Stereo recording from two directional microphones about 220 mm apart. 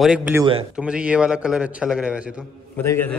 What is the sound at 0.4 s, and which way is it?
Speech, 25° right (ahead or behind).